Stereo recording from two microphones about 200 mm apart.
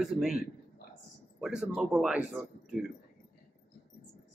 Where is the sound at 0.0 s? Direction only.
Centre (ahead or behind).